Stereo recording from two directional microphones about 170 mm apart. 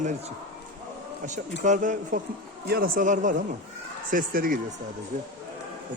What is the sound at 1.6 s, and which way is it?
Speech, 45° right (ahead or behind).